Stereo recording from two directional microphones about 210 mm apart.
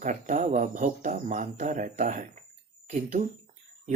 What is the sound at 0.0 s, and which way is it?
Speech, 35° right (ahead or behind).